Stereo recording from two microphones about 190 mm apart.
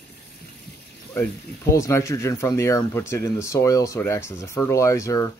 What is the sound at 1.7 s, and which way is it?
Speech, 15° left (ahead or behind).